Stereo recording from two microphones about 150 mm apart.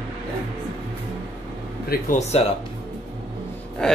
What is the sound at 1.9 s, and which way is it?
Speech, 90° left.